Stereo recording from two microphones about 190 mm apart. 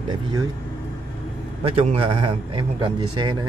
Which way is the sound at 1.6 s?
30° right (ahead or behind).